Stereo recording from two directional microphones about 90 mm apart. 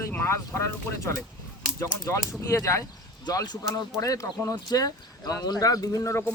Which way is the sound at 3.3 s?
50° left (ahead or behind).